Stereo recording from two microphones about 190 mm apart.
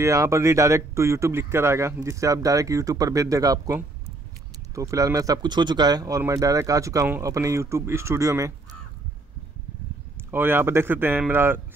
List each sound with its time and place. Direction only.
0.0 s speech: 15° right (ahead or behind)
10.3 s speech: 10° right (ahead or behind)